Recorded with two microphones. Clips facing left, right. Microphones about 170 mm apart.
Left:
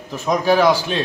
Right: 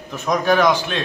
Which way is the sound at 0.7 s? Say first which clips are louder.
Left 2 dB; 35° left (ahead or behind).